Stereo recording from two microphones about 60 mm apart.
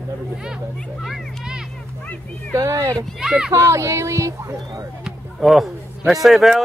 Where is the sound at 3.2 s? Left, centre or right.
Centre.